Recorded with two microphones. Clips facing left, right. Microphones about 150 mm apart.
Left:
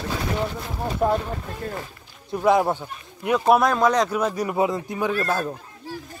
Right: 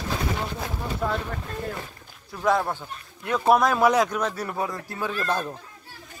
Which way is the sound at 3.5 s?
Centre (ahead or behind).